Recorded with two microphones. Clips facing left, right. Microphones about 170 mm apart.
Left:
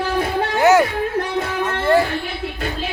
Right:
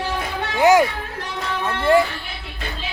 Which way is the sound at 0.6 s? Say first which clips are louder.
Even; 15° right (ahead or behind).